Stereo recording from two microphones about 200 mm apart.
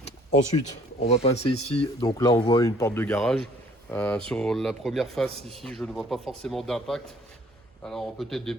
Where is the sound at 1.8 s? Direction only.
20° left (ahead or behind).